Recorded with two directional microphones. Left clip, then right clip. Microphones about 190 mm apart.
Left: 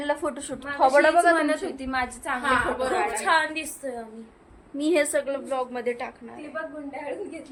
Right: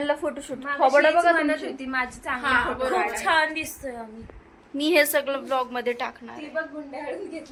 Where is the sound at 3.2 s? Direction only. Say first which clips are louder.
Right 1 dB; centre (ahead or behind).